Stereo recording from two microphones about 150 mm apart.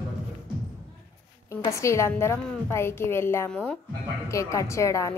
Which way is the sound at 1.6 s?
20° left (ahead or behind).